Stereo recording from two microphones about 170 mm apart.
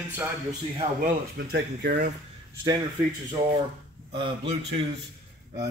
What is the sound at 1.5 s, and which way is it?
Speech, 75° right (ahead or behind).